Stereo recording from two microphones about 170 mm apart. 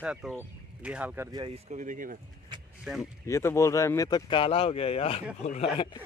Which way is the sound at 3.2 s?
15° left (ahead or behind).